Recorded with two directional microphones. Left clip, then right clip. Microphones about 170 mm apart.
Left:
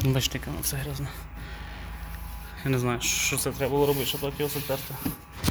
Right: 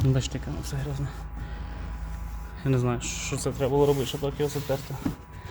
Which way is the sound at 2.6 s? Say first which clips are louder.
Even; 15° right (ahead or behind).